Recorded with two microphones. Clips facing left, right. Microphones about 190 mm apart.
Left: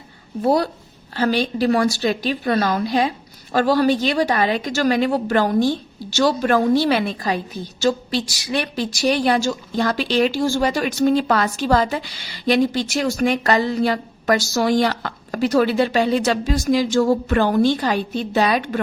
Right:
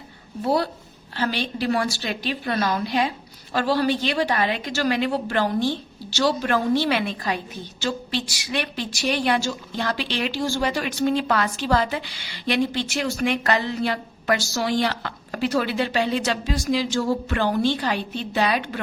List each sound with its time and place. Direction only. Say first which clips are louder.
0.4 s a woman's voice: left 4 dB; 45° left (ahead or behind)